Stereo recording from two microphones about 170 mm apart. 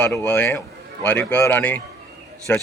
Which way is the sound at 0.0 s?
10° left (ahead or behind).